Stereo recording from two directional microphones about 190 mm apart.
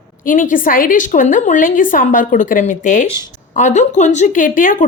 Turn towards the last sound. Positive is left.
turn(degrees=45)  # may be behind; listen again after turning